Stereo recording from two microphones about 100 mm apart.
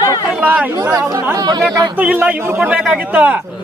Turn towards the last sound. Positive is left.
turn(degrees=-15)  # may be behind; listen again after turning